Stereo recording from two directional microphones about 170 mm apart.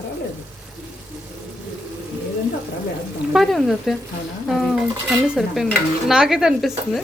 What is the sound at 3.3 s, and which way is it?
Stir, centre (ahead or behind).